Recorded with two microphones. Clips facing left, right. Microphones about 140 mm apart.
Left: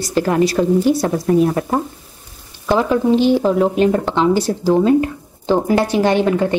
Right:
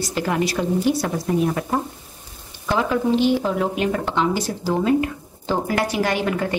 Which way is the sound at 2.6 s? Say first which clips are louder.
Left 5 dB; 30° left (ahead or behind).